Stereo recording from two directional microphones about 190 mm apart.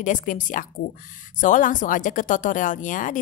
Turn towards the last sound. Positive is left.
turn(degrees=45)  # may be behind; listen again after turning